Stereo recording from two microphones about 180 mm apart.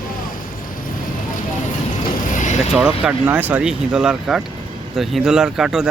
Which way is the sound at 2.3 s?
45° left (ahead or behind).